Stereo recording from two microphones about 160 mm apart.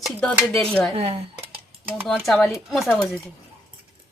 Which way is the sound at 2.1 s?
5° left (ahead or behind).